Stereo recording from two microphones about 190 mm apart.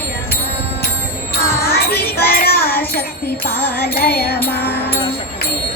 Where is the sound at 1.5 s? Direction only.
55° left (ahead or behind).